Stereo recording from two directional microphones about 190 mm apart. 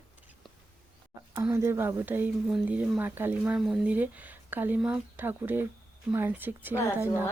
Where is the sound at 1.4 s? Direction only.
15° right (ahead or behind).